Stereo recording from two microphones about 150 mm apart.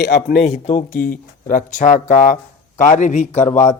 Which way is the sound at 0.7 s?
75° left (ahead or behind).